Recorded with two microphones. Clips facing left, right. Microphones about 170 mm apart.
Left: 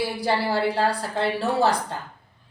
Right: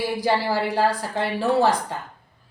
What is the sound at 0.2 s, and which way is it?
A woman's voice, 15° right (ahead or behind).